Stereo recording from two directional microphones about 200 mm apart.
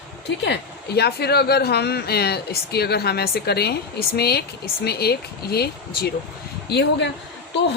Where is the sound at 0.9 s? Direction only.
55° left (ahead or behind).